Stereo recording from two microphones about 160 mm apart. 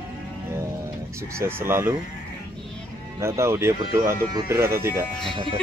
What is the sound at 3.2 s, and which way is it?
Speech, 15° right (ahead or behind).